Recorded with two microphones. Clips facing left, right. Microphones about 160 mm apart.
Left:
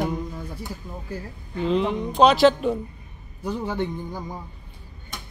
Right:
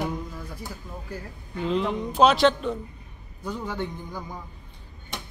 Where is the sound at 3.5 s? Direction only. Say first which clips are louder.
Left 4 dB; 20° left (ahead or behind).